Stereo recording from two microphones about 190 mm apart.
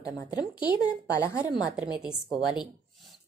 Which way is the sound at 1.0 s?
15° left (ahead or behind).